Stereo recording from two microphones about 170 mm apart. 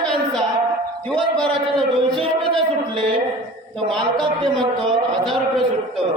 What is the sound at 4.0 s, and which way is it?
Speech, 25° right (ahead or behind).